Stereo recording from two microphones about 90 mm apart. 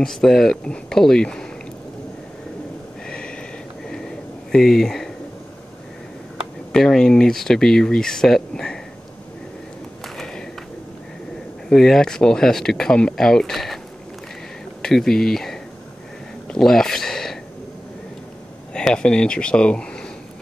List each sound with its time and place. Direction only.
0.0 s speech: 5° left (ahead or behind)
3.1 s a sound: 10° left (ahead or behind)
6.7 s speech: 5° left (ahead or behind)
10.0 s a sound: 5° left (ahead or behind)
11.7 s speech: 5° left (ahead or behind)
14.8 s speech: 5° left (ahead or behind)
18.7 s speech: 10° left (ahead or behind)